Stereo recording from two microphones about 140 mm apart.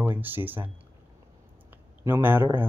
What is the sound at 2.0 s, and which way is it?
Speech, 15° right (ahead or behind).